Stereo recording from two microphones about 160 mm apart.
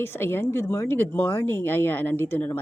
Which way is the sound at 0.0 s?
15° left (ahead or behind).